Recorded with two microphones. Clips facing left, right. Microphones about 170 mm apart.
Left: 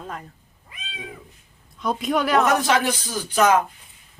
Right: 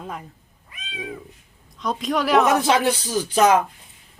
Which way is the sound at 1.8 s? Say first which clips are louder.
Left 1 dB; centre (ahead or behind).